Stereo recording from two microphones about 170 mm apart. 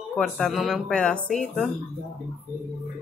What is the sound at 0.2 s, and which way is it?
Speech, centre (ahead or behind).